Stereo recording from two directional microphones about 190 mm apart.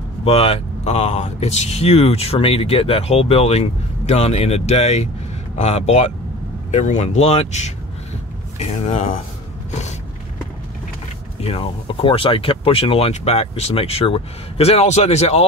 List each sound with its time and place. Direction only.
0.2 s speech: 30° left (ahead or behind)
9.7 s a sound: 35° left (ahead or behind)
11.4 s speech: 30° left (ahead or behind)